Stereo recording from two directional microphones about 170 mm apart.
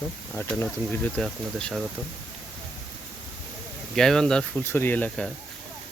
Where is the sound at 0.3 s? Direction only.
10° left (ahead or behind).